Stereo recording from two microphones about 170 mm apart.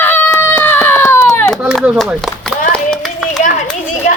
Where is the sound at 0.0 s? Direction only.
10° left (ahead or behind).